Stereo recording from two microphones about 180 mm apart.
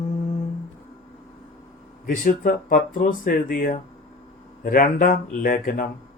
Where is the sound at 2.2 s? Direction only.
50° left (ahead or behind).